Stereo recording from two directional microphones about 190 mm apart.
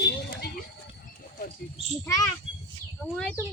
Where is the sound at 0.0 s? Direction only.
60° left (ahead or behind).